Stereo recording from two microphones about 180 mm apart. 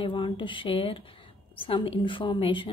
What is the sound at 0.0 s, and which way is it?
A woman's voice, 25° left (ahead or behind).